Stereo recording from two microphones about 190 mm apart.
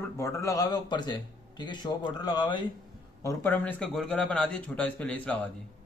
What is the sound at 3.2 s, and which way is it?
A man's voice, 10° left (ahead or behind).